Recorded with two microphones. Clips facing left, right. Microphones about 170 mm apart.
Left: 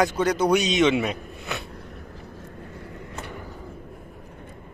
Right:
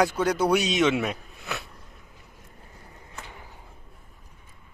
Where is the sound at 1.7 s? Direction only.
70° left (ahead or behind).